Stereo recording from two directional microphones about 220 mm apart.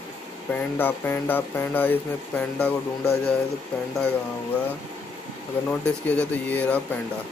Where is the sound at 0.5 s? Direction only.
10° left (ahead or behind).